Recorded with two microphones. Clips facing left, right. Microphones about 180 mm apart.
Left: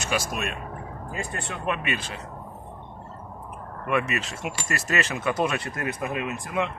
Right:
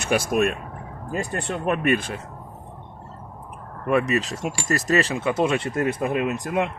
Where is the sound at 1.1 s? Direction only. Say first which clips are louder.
Right 7 dB; 35° right (ahead or behind); by 2.2 s 50° right (ahead or behind).